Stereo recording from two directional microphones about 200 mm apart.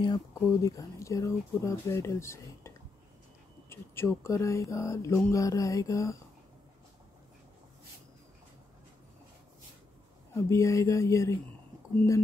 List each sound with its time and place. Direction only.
0.0 s speech: 15° left (ahead or behind)
10.3 s speech: 15° left (ahead or behind)